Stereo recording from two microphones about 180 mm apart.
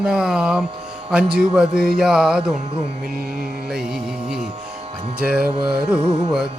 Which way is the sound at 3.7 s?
5° right (ahead or behind).